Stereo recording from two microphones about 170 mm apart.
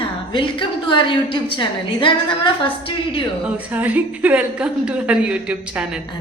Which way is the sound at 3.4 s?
10° right (ahead or behind).